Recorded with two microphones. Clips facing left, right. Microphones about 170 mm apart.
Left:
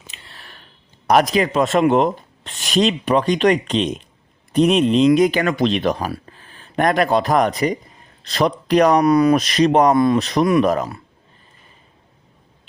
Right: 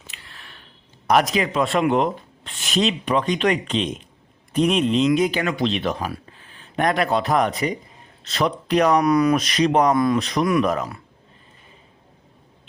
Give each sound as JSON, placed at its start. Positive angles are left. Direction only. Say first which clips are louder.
{"t": 0.1, "sound": "a sound", "louder": "left 2 dB", "side_deg": 30}
{"t": 1.0, "sound": "speech", "louder": "left 3 dB", "side_deg": 40}
{"t": 5.1, "sound": "speech", "louder": "left 5 dB", "side_deg": 55}